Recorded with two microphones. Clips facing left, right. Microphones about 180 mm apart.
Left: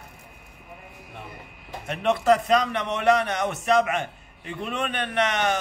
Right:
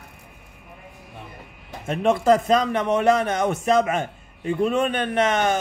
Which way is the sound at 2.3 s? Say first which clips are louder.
Right 3 dB; 35° right (ahead or behind).